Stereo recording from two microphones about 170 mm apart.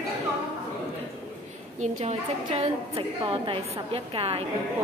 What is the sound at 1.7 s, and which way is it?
A woman's voice, 40° right (ahead or behind).